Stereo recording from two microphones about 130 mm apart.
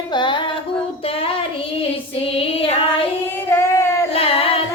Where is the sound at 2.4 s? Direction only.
45° left (ahead or behind).